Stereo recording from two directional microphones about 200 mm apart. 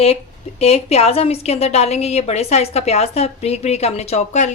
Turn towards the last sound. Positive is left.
turn(degrees=35)  # may be behind; listen again after turning